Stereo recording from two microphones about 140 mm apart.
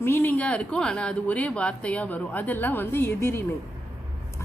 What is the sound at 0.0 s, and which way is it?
A woman's voice, 15° left (ahead or behind).